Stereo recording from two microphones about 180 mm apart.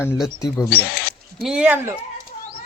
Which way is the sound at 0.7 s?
60° left (ahead or behind).